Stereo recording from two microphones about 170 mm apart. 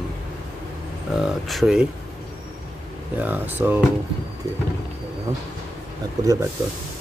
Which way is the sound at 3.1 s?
10° right (ahead or behind).